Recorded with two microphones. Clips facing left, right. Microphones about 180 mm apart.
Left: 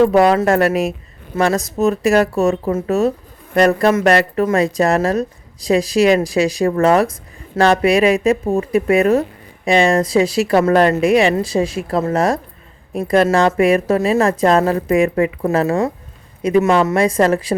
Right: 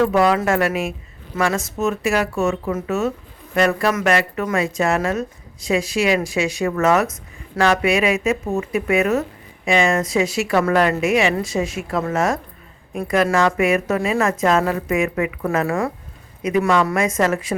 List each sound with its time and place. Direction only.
0.0 s speech: 35° left (ahead or behind)